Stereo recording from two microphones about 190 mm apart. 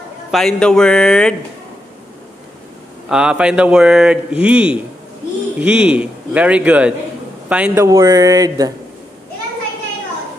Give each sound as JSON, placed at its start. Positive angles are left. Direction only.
{"t": 0.3, "sound": "a man's voice", "side_deg": 0}
{"t": 3.1, "sound": "a man's voice", "side_deg": -5}